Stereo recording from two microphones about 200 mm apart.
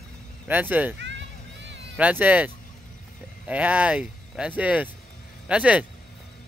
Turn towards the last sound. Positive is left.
turn(degrees=-5)  # may be behind; listen again after turning